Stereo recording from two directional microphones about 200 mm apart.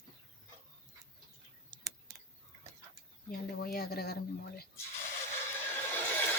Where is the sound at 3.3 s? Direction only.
50° left (ahead or behind).